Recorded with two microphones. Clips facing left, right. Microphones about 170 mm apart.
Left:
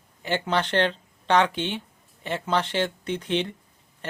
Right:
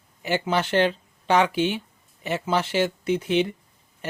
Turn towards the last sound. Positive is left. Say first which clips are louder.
# right 2 dB
turn(degrees=-10)  # may be behind; listen again after turning